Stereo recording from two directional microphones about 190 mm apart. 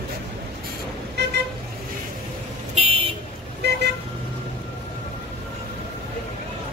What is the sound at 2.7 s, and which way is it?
Vehicle, 30° right (ahead or behind).